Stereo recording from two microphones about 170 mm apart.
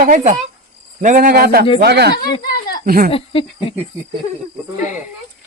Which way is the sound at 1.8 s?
75° right (ahead or behind).